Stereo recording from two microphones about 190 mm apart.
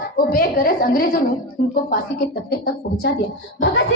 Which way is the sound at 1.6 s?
50° left (ahead or behind).